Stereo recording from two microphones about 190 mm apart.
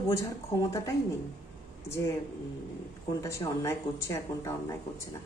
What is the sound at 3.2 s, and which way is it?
Speech, 15° left (ahead or behind).